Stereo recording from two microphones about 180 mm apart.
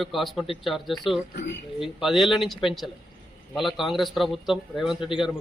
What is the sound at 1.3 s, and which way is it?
Speech, 75° left (ahead or behind).